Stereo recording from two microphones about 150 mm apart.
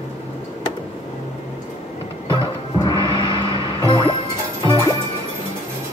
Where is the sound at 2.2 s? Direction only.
35° left (ahead or behind).